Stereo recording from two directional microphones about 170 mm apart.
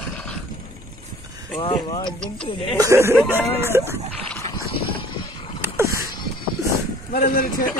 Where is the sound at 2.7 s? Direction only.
15° right (ahead or behind).